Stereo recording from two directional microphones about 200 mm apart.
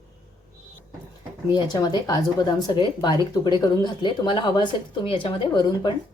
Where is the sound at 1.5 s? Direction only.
20° left (ahead or behind).